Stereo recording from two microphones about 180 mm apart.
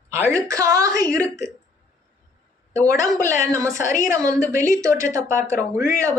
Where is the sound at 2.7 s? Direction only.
20° right (ahead or behind).